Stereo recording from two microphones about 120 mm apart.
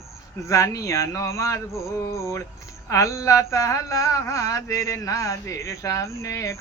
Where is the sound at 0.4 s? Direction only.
25° left (ahead or behind).